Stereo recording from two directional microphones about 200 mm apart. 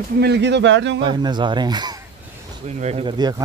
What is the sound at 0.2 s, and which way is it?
Speech, 60° right (ahead or behind).